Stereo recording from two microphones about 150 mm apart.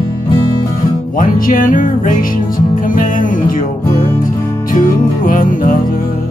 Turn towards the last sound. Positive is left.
turn(degrees=65)  # may be behind; listen again after turning